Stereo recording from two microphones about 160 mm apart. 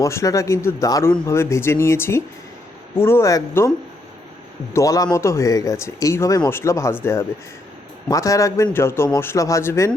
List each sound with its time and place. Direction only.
0.0 s speech: 20° left (ahead or behind)
4.7 s speech: 20° left (ahead or behind)